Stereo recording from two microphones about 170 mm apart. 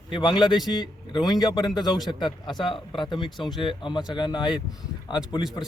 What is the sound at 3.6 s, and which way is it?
Speech, 30° left (ahead or behind).